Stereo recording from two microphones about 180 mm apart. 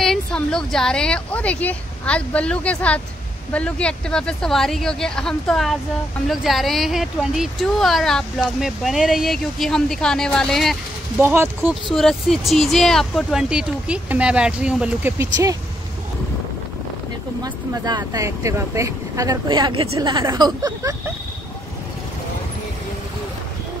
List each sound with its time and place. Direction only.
0.0 s a woman's voice: centre (ahead or behind)
11.1 s speech: 15° right (ahead or behind)
11.9 s speech: centre (ahead or behind); by 15.5 s 15° right (ahead or behind)
17.4 s speech: 20° right (ahead or behind)